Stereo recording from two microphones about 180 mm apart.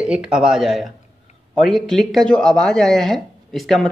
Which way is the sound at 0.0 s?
5° right (ahead or behind).